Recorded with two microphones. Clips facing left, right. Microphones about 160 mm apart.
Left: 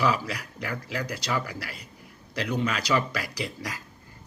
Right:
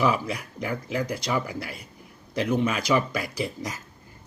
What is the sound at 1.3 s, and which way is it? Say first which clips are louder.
Speech: right 2 dB; 15° right (ahead or behind).